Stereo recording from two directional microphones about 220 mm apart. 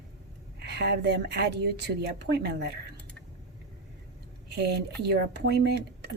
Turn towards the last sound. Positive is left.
turn(degrees=-50)  # may be behind; listen again after turning